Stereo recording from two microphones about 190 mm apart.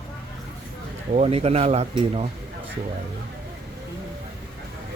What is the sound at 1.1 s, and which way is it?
Speech, 35° right (ahead or behind).